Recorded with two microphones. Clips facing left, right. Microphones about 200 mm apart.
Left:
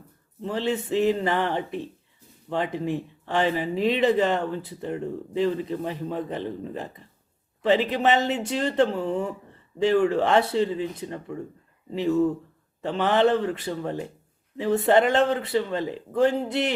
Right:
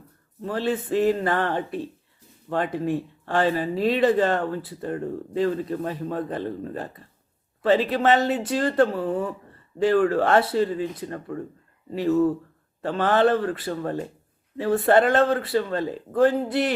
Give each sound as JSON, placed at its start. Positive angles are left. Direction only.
{"t": 0.4, "sound": "speech", "side_deg": 20}